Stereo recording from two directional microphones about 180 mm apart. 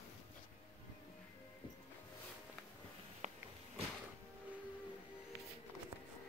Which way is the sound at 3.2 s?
40° right (ahead or behind).